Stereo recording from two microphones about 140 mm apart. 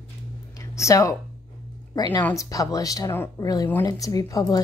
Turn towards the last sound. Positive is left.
turn(degrees=25)  # may be behind; listen again after turning